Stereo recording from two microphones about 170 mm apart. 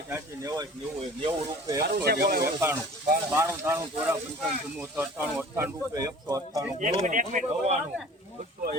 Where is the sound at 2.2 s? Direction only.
60° right (ahead or behind).